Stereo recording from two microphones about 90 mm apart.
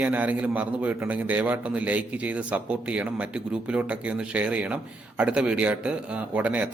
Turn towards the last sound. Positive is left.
turn(degrees=-15)  # may be behind; listen again after turning